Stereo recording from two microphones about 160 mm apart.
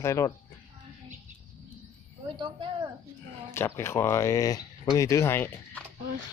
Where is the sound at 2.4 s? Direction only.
30° right (ahead or behind).